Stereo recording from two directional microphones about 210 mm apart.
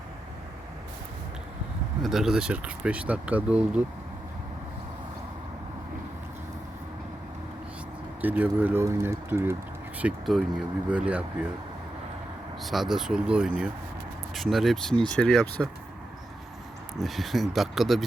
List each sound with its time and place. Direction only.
2.0 s speech: centre (ahead or behind)
8.2 s speech: 10° right (ahead or behind)
12.6 s speech: centre (ahead or behind)
17.0 s speech: centre (ahead or behind)